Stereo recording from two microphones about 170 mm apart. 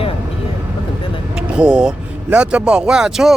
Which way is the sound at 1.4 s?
5° right (ahead or behind).